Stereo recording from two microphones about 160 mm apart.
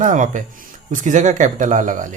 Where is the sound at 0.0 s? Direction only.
50° right (ahead or behind).